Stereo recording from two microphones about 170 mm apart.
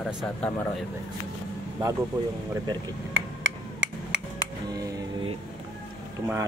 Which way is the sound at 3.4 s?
90° right.